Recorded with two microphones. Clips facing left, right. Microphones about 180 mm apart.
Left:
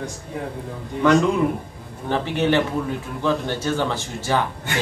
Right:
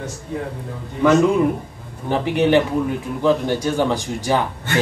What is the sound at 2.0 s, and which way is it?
A man's voice, 15° right (ahead or behind).